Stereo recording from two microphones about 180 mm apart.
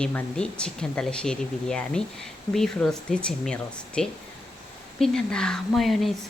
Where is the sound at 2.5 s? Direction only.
20° left (ahead or behind).